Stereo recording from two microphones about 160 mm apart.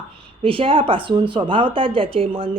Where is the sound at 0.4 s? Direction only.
35° right (ahead or behind).